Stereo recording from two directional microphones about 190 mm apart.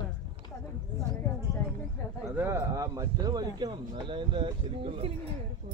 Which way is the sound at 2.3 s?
10° right (ahead or behind).